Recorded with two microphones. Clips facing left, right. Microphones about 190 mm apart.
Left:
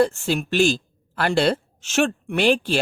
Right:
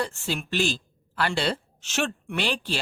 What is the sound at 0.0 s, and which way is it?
A woman's voice, 45° left (ahead or behind).